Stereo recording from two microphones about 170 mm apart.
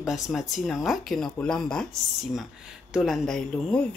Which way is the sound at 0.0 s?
Centre (ahead or behind).